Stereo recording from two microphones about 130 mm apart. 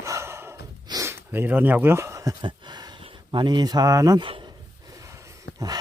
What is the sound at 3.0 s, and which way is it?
Speech, 40° right (ahead or behind).